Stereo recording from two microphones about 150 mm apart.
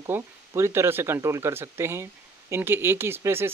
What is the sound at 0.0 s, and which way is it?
Speech, 20° right (ahead or behind).